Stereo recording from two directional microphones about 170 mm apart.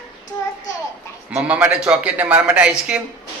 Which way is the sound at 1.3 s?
5° right (ahead or behind).